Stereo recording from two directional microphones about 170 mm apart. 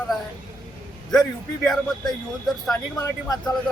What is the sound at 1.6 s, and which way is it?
Speech, centre (ahead or behind).